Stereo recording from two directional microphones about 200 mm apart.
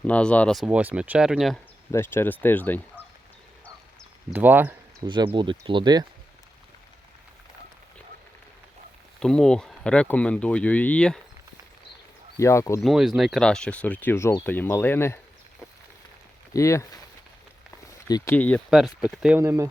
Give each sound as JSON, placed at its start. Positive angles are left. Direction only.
{"t": 0.0, "sound": "speech", "side_deg": 5}
{"t": 1.9, "sound": "speech", "side_deg": 10}
{"t": 4.3, "sound": "speech", "side_deg": -10}
{"t": 5.0, "sound": "speech", "side_deg": -25}
{"t": 9.2, "sound": "speech", "side_deg": 5}
{"t": 12.4, "sound": "speech", "side_deg": 15}
{"t": 12.8, "sound": "speech", "side_deg": 0}
{"t": 16.5, "sound": "speech", "side_deg": 15}